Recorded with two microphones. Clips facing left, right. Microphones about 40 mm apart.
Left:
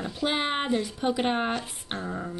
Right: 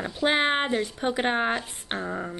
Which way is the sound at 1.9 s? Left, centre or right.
Right.